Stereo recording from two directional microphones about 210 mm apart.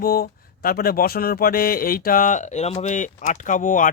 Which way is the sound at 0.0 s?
45° left (ahead or behind).